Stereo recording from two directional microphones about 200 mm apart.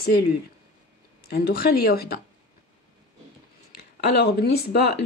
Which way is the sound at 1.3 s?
50° left (ahead or behind).